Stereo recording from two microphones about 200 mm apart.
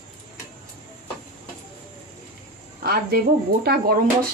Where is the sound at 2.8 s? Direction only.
50° right (ahead or behind).